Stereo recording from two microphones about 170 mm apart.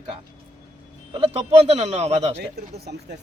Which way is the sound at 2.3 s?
75° right (ahead or behind).